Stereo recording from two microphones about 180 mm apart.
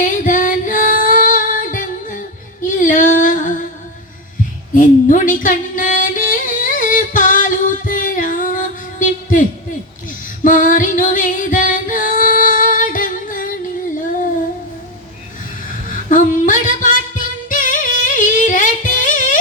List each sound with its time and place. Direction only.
0.0 s music: 45° left (ahead or behind)
2.6 s female singing: 45° left (ahead or behind)
4.7 s music: 45° left (ahead or behind)
10.4 s singing: 45° left (ahead or behind)
16.0 s singing: 45° left (ahead or behind)
17.5 s music: 45° left (ahead or behind)